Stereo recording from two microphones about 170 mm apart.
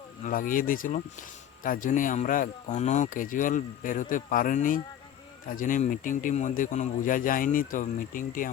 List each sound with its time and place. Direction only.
0.3 s speech: 55° left (ahead or behind)